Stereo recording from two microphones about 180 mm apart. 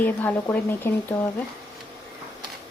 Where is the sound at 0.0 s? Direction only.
10° left (ahead or behind).